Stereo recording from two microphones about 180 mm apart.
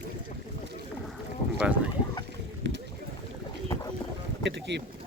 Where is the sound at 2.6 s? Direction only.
85° right.